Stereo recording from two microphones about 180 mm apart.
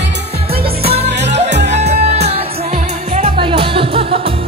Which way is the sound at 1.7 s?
40° right (ahead or behind).